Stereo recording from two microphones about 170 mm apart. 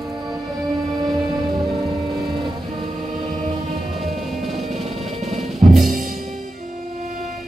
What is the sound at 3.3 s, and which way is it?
Music, 45° right (ahead or behind).